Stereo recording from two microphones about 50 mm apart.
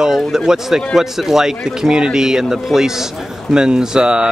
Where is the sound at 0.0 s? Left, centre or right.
Centre.